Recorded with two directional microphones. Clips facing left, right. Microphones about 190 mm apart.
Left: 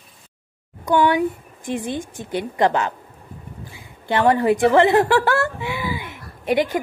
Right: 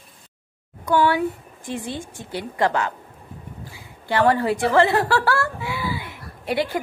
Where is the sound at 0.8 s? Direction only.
20° left (ahead or behind).